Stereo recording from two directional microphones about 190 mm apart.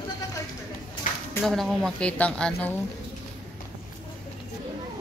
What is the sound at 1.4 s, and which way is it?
A woman's voice, centre (ahead or behind).